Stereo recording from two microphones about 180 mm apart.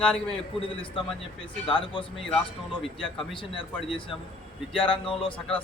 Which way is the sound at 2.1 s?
5° left (ahead or behind).